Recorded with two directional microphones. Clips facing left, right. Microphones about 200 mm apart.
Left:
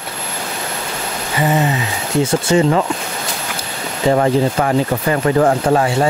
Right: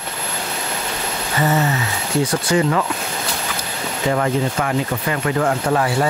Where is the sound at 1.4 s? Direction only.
15° left (ahead or behind).